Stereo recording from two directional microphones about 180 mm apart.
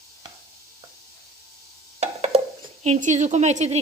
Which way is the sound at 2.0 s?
35° right (ahead or behind).